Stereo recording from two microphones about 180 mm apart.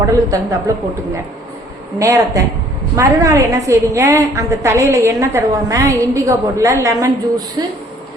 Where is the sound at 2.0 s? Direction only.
15° right (ahead or behind).